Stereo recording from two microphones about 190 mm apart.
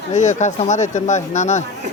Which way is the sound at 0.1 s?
40° left (ahead or behind).